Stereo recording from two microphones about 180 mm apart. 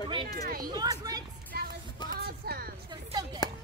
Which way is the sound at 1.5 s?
60° right (ahead or behind).